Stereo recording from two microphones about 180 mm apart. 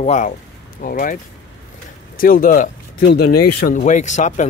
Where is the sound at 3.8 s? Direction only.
40° left (ahead or behind).